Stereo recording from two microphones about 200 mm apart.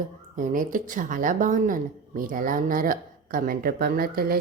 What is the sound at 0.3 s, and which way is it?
Speech, 40° right (ahead or behind).